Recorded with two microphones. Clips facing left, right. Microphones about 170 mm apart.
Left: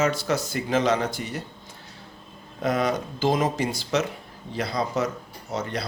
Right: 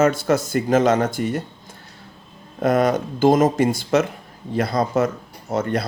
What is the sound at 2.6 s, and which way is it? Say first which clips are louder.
Speech: right 6 dB; 50° right (ahead or behind).